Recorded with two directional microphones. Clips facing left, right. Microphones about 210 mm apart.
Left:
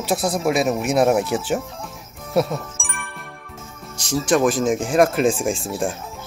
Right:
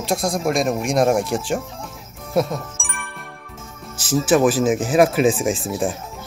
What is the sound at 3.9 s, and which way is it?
Speech, 5° right (ahead or behind).